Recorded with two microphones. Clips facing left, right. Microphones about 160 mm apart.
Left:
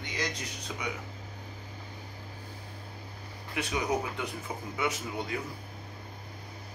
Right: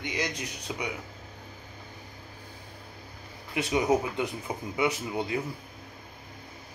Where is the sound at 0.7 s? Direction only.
20° right (ahead or behind).